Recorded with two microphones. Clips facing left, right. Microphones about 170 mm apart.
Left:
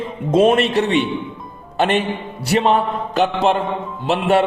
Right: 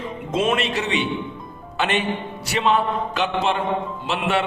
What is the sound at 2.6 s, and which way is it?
A man's voice, 45° left (ahead or behind).